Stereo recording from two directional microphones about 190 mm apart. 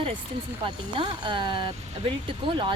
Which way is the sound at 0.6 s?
25° right (ahead or behind).